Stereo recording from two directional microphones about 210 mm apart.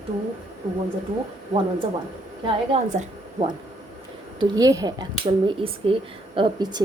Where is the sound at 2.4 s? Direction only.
25° right (ahead or behind).